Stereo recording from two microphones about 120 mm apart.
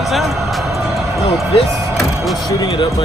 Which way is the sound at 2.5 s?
40° left (ahead or behind).